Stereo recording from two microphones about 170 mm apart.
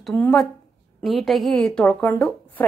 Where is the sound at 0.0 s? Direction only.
5° left (ahead or behind).